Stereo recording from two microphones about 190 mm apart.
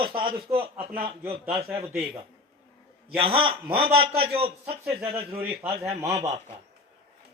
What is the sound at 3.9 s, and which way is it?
Speech, 55° right (ahead or behind).